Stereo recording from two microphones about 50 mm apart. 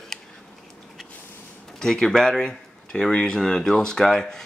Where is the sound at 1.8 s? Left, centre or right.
Centre.